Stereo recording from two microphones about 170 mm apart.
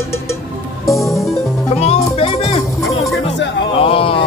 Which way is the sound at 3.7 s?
35° left (ahead or behind).